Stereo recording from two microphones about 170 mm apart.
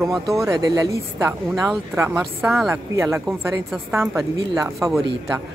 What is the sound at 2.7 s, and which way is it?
Speech, 15° right (ahead or behind).